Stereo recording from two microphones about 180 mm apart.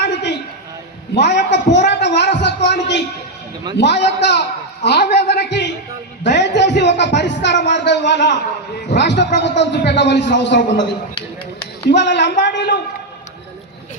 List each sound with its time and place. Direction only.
0.0 s a sound: 75° left (ahead or behind)
3.8 s a man's voice: 70° left (ahead or behind)
6.2 s music: 75° left (ahead or behind)
8.9 s a man's voice: 75° left (ahead or behind)